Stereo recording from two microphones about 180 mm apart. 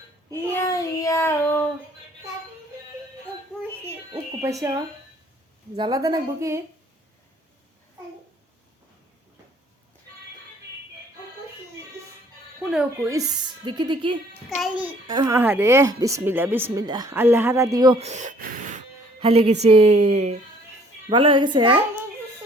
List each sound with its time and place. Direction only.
0.5 s child singing: 15° left (ahead or behind)
3.6 s music: 15° right (ahead or behind)
4.4 s speech: 20° right (ahead or behind)
5.7 s a woman's voice: 25° right (ahead or behind)
13.0 s a woman's voice: 15° right (ahead or behind)
14.6 s speech: 10° right (ahead or behind)
15.0 s a woman's voice: 25° right (ahead or behind)
15.3 s speech: 10° right (ahead or behind)
18.0 s a sound: 40° right (ahead or behind)
19.2 s a woman's voice: 35° right (ahead or behind)